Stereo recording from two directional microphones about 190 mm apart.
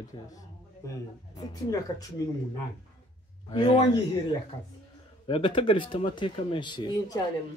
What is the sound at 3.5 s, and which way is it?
Speech, 25° left (ahead or behind).